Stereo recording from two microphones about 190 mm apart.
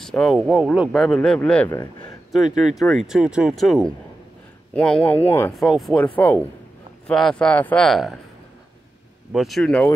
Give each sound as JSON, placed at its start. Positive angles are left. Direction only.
{"t": 0.0, "sound": "speech", "side_deg": 0}
{"t": 1.7, "sound": "speech", "side_deg": 20}
{"t": 2.3, "sound": "speech", "side_deg": 0}
{"t": 5.5, "sound": "speech", "side_deg": 0}
{"t": 9.3, "sound": "speech", "side_deg": 0}